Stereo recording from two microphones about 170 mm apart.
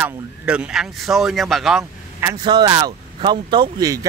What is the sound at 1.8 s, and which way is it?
Speech, 20° right (ahead or behind).